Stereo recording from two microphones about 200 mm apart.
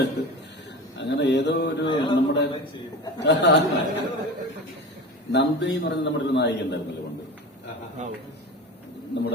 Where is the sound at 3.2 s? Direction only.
60° left (ahead or behind).